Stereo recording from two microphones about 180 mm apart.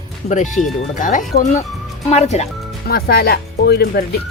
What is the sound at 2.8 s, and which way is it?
Speech, 60° left (ahead or behind).